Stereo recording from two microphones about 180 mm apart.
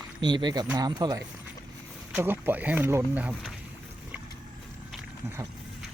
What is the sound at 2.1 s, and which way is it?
Speech, 10° right (ahead or behind).